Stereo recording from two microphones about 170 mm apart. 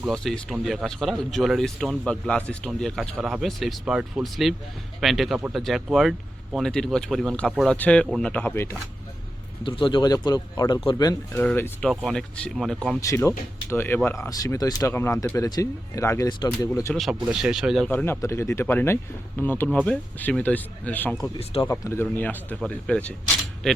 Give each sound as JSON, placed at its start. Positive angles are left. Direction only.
{"t": 0.1, "sound": "speech", "side_deg": 5}
{"t": 9.6, "sound": "speech", "side_deg": 30}
{"t": 13.0, "sound": "speech", "side_deg": 15}
{"t": 16.9, "sound": "speech", "side_deg": 0}
{"t": 17.9, "sound": "speech", "side_deg": 15}
{"t": 21.3, "sound": "speech", "side_deg": 35}
{"t": 21.7, "sound": "speech", "side_deg": 15}